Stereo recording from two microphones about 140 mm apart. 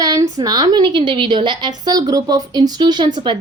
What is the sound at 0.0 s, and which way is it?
A woman's voice, 25° right (ahead or behind).